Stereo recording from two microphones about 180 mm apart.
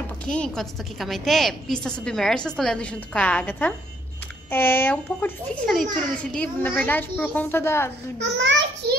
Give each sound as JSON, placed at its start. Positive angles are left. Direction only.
{"t": 0.2, "sound": "a woman's voice", "side_deg": 5}
{"t": 8.2, "sound": "a child's voice", "side_deg": -85}